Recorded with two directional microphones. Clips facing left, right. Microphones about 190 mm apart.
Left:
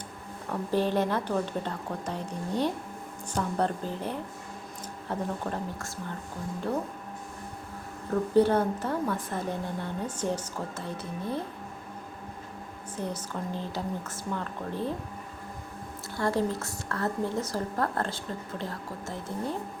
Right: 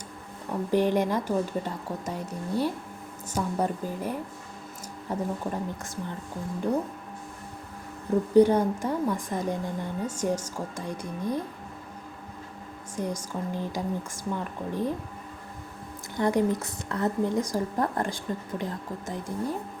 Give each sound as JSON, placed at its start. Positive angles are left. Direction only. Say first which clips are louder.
{"t": 0.7, "sound": "speech", "louder": "right 2 dB", "side_deg": -15}
{"t": 8.1, "sound": "speech", "louder": "right 3 dB", "side_deg": -15}
{"t": 13.0, "sound": "speech", "louder": "right 3 dB", "side_deg": -15}
{"t": 16.1, "sound": "speech", "louder": "right 4 dB", "side_deg": -15}